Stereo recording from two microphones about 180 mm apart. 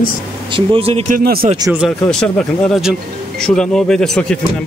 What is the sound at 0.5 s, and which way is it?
Speech, 30° right (ahead or behind).